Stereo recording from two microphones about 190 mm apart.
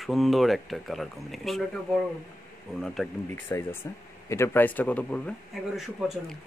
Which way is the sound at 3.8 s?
15° left (ahead or behind).